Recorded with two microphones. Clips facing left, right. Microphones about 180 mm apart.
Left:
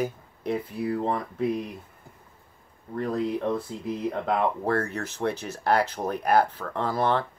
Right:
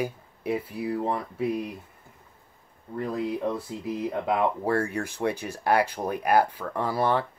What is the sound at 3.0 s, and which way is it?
Speech, 10° right (ahead or behind).